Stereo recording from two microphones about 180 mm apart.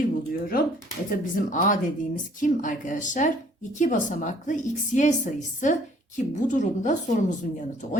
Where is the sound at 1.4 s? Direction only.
45° left (ahead or behind).